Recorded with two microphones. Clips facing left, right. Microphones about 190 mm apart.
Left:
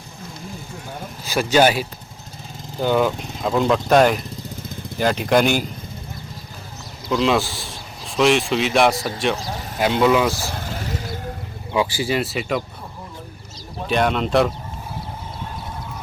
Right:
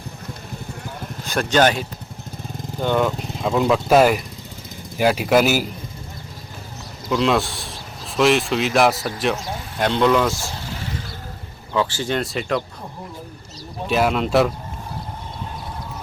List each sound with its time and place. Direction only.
1.2 s speech: 5° left (ahead or behind)
7.1 s speech: centre (ahead or behind)
10.5 s vehicle: 50° left (ahead or behind)
11.7 s speech: 10° left (ahead or behind)
13.8 s speech: 5° right (ahead or behind)